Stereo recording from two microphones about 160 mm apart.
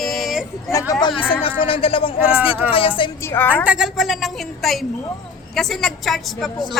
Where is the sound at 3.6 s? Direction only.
5° right (ahead or behind).